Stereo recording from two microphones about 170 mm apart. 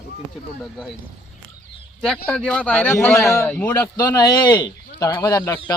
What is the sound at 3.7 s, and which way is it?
Speech, 25° left (ahead or behind).